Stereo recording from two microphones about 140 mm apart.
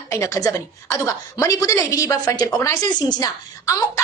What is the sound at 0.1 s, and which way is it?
A woman's voice, 20° left (ahead or behind).